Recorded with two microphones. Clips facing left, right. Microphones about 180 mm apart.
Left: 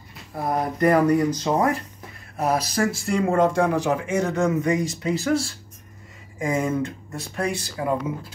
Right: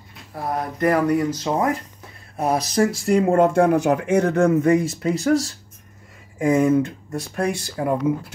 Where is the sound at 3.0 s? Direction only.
40° right (ahead or behind).